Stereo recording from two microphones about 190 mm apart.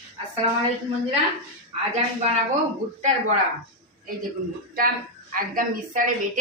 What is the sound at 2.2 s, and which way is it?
Speech, 35° right (ahead or behind).